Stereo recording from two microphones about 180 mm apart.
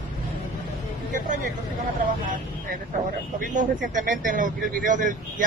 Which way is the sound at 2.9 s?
45° right (ahead or behind).